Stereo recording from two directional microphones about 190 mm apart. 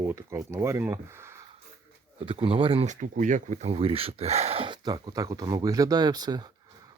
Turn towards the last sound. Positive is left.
turn(degrees=-20)  # may be behind; listen again after turning